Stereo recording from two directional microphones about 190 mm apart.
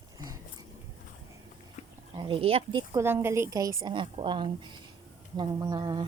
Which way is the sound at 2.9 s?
10° right (ahead or behind).